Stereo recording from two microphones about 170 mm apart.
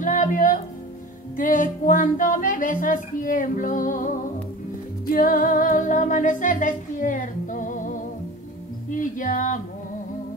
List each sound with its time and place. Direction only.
0.0 s music: 50° left (ahead or behind)
5.1 s speech: 55° left (ahead or behind)
8.9 s music: 50° left (ahead or behind)